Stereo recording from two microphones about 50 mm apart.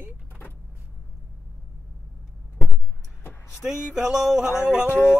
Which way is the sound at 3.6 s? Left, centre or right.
Centre.